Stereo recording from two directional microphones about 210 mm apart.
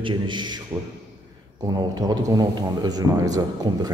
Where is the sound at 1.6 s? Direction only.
20° right (ahead or behind).